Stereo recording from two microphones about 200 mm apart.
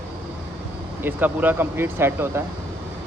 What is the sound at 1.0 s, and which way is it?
Speech, 10° right (ahead or behind).